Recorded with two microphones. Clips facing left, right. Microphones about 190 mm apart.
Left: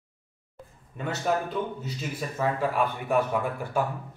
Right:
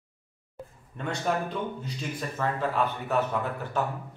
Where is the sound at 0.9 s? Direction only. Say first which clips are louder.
Left 1 dB; 5° left (ahead or behind).